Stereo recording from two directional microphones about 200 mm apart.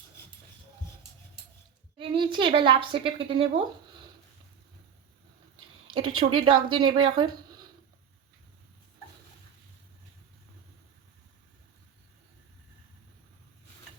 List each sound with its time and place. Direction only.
2.0 s a woman's voice: 25° right (ahead or behind)
5.9 s a woman's voice: 25° right (ahead or behind)